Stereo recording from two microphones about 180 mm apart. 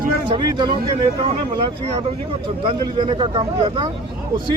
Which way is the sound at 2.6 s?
25° right (ahead or behind).